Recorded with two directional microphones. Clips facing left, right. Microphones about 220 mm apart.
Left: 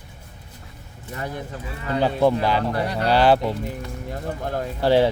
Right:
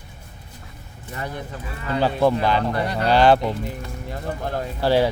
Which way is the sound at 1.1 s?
45° left (ahead or behind).